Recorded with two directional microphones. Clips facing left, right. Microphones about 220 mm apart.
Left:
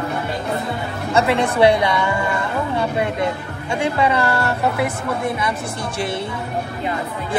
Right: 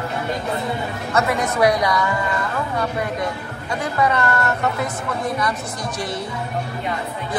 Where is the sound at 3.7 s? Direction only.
30° left (ahead or behind).